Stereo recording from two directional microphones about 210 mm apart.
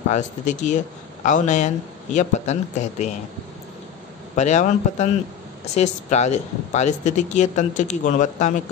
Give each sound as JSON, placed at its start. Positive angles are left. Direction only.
{"t": 0.1, "sound": "speech", "side_deg": 35}
{"t": 4.4, "sound": "speech", "side_deg": 35}